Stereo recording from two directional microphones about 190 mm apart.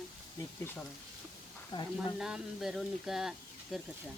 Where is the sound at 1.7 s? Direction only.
20° left (ahead or behind).